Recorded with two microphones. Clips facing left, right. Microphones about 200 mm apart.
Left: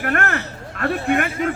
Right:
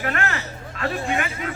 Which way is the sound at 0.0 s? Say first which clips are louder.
Left 4 dB; 55° left (ahead or behind).